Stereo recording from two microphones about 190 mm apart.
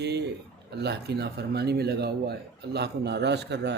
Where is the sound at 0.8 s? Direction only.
60° right (ahead or behind).